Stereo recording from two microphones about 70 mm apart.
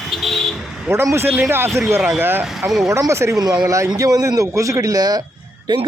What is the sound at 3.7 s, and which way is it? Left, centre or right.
A man's voice, right.